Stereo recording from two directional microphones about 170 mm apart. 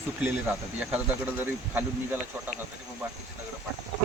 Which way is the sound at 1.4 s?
10° right (ahead or behind).